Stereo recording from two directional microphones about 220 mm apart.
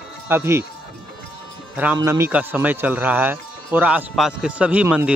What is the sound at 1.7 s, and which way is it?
A man's voice, 10° right (ahead or behind).